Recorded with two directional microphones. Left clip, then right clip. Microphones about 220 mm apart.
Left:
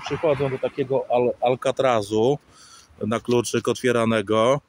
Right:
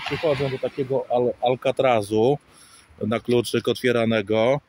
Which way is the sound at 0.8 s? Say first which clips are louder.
Left 1 dB; 15° right (ahead or behind).